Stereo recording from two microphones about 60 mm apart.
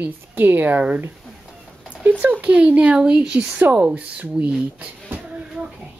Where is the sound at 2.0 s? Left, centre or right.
Right.